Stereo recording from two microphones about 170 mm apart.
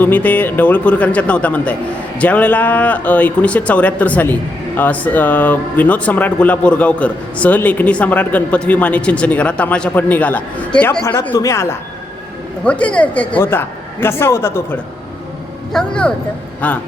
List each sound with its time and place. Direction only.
0.0 s speech: 10° left (ahead or behind)
15.7 s speech: 5° left (ahead or behind)